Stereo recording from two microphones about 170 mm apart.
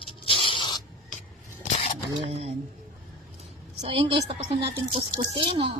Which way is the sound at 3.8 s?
30° right (ahead or behind).